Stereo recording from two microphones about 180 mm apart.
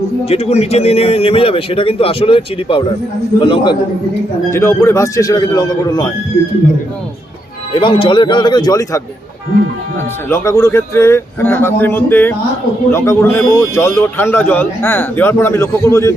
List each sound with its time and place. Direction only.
0.3 s a man's voice: 35° left (ahead or behind)
4.5 s a man's voice: 15° left (ahead or behind)
7.8 s a man's voice: 30° left (ahead or behind)
10.2 s speech: 15° left (ahead or behind)